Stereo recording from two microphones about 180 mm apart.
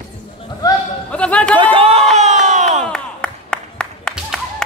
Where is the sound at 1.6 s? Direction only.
30° right (ahead or behind).